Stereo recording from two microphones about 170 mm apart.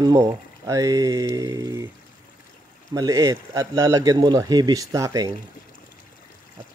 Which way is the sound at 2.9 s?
20° right (ahead or behind).